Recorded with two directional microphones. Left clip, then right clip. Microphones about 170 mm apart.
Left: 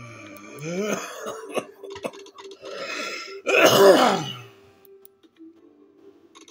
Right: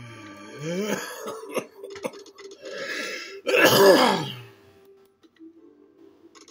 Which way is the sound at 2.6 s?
5° right (ahead or behind).